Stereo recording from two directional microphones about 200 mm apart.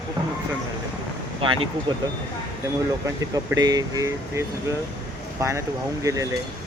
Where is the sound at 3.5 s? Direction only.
20° right (ahead or behind).